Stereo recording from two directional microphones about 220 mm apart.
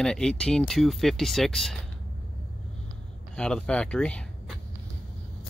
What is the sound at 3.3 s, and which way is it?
Speech, 5° left (ahead or behind).